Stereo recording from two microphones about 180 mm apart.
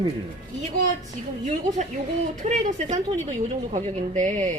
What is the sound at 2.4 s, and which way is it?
Speech, 40° right (ahead or behind).